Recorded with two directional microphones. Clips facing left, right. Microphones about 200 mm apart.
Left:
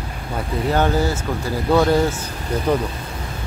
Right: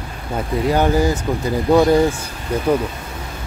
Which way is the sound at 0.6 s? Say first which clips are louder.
Right 2 dB; 10° right (ahead or behind).